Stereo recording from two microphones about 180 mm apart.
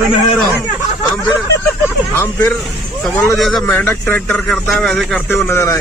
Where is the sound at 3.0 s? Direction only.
Centre (ahead or behind).